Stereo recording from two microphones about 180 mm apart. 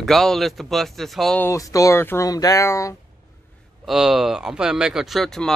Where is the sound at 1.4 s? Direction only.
15° left (ahead or behind).